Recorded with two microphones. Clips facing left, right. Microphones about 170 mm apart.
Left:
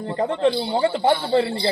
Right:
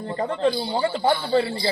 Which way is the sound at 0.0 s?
25° left (ahead or behind).